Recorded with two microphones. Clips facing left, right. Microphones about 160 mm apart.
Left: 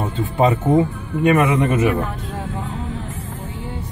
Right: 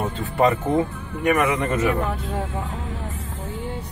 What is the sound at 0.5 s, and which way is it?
Speech, 20° left (ahead or behind).